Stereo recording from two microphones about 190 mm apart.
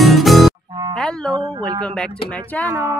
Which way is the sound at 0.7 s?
20° right (ahead or behind).